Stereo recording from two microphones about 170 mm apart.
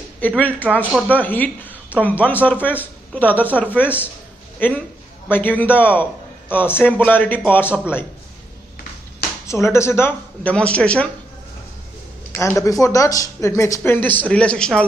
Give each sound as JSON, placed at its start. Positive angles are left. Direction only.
{"t": 0.4, "sound": "speech", "side_deg": 10}
{"t": 9.5, "sound": "speech", "side_deg": 15}
{"t": 12.3, "sound": "speech", "side_deg": 15}